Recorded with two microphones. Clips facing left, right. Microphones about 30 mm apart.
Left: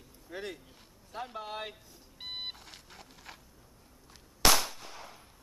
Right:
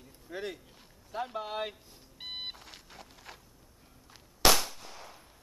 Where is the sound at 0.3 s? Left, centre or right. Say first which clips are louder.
Right 2 dB; centre.